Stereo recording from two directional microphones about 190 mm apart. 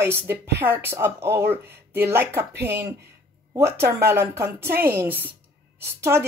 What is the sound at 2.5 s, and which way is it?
Speech, 55° right (ahead or behind).